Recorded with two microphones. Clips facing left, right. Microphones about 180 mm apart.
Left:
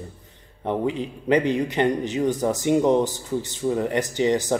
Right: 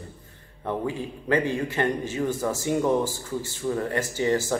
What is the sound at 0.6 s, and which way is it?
A man's voice, 20° left (ahead or behind).